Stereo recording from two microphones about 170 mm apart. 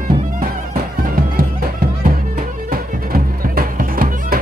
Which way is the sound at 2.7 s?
55° right (ahead or behind).